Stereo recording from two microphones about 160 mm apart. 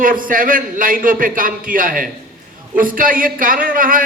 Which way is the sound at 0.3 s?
60° right (ahead or behind).